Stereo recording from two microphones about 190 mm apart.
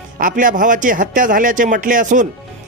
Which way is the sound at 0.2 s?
45° right (ahead or behind).